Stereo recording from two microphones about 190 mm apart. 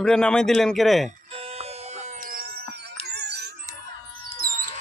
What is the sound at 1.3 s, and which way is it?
Music, 30° right (ahead or behind).